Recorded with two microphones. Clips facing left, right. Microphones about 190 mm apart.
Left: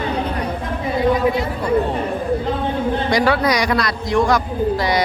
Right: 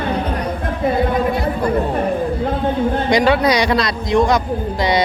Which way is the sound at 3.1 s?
20° right (ahead or behind).